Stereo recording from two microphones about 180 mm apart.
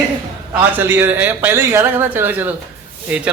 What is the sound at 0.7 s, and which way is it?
A man's voice, 10° right (ahead or behind).